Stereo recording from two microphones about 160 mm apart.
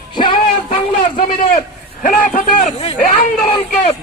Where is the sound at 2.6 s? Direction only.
40° left (ahead or behind).